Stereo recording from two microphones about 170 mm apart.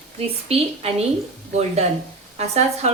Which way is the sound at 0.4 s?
35° right (ahead or behind).